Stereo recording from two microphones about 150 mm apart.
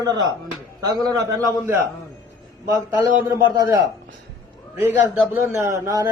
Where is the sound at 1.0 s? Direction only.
20° right (ahead or behind).